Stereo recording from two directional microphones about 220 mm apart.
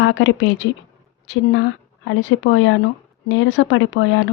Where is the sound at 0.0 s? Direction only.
55° left (ahead or behind).